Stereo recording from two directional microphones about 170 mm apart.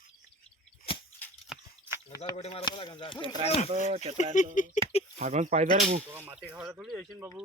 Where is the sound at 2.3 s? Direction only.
35° left (ahead or behind).